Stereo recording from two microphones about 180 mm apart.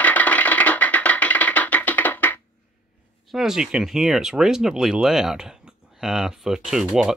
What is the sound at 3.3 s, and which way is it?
Speech, centre (ahead or behind).